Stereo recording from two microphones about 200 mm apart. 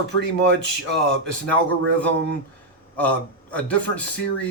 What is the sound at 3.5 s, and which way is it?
Speech, 5° left (ahead or behind).